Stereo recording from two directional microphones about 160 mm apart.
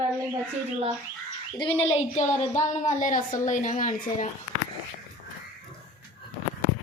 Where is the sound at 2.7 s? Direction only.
50° left (ahead or behind).